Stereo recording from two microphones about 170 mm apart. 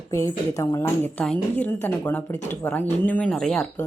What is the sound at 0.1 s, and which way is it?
A woman's voice, 15° left (ahead or behind).